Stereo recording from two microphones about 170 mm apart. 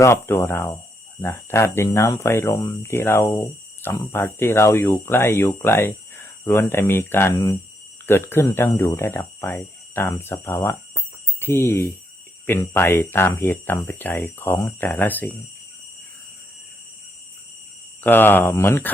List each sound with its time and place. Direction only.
0.0 s speech: 15° left (ahead or behind)
18.0 s speech: 10° left (ahead or behind)